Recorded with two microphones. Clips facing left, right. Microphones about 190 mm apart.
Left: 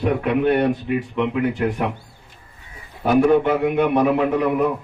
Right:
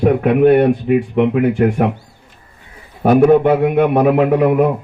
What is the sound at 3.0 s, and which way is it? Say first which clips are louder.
A man's voice: right 5 dB; 50° right (ahead or behind).